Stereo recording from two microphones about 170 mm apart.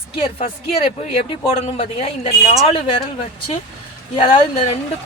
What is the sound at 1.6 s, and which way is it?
A man's voice, 35° left (ahead or behind).